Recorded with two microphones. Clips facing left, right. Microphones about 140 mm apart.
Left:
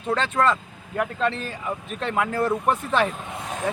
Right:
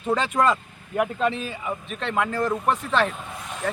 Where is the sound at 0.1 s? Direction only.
10° right (ahead or behind); by 3.2 s 10° left (ahead or behind).